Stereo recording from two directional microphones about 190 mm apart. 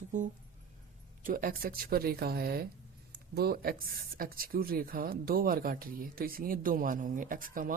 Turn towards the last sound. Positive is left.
turn(degrees=-45)  # may be behind; listen again after turning